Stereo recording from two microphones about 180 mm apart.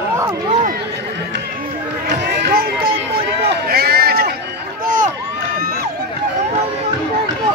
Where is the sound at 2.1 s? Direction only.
65° right (ahead or behind).